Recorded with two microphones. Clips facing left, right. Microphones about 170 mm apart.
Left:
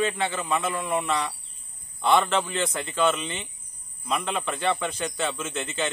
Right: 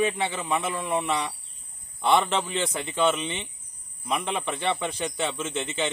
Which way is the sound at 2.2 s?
15° right (ahead or behind).